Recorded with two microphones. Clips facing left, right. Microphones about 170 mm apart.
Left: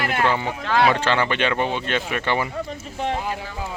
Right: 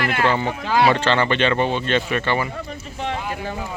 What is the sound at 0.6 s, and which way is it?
Speech, 5° right (ahead or behind).